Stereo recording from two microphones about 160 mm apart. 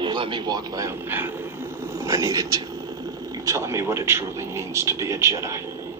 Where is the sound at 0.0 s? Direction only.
30° right (ahead or behind).